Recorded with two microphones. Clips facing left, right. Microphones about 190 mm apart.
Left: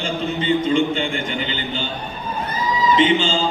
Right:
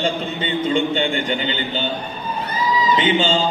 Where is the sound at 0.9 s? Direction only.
35° right (ahead or behind).